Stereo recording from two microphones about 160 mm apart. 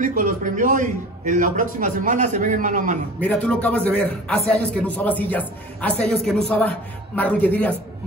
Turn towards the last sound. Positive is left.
turn(degrees=10)  # may be behind; listen again after turning